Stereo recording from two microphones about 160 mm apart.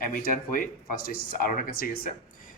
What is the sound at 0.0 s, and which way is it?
Speech, 60° left (ahead or behind).